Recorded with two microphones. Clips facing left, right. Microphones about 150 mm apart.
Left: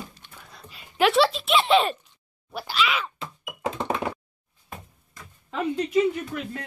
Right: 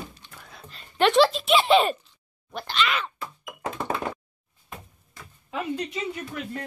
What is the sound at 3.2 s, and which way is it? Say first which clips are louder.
Knock: even; 20° left (ahead or behind).